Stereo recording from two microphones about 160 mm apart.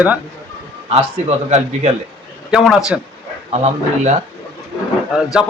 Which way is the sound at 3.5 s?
45° right (ahead or behind).